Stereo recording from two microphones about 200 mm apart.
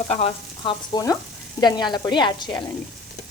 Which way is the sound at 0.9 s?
20° left (ahead or behind).